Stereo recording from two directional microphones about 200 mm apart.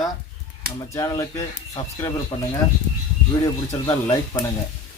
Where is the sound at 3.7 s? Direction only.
15° left (ahead or behind).